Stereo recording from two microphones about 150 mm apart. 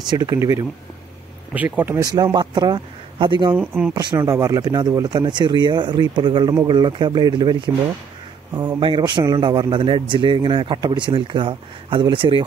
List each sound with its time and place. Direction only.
0.1 s speech: 25° right (ahead or behind)
2.1 s a man's voice: 30° right (ahead or behind)
3.5 s speech: 10° right (ahead or behind)
3.9 s a man's voice: 30° right (ahead or behind)